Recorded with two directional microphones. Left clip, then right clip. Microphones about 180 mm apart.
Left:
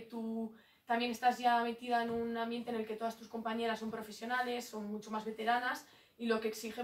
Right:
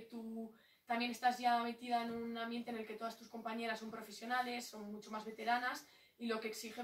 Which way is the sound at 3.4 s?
Centre (ahead or behind).